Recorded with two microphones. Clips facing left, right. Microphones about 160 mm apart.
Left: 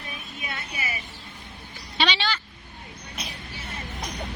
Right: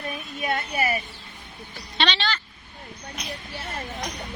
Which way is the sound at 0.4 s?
60° right (ahead or behind).